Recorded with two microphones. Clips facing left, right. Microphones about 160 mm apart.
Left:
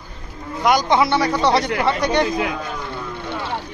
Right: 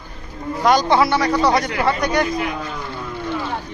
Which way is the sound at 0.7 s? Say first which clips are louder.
Right 1 dB; 15° left (ahead or behind).